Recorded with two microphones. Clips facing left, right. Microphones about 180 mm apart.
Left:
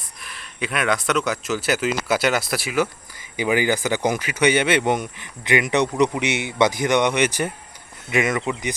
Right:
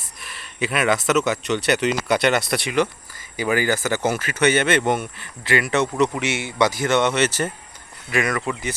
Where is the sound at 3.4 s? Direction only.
15° left (ahead or behind).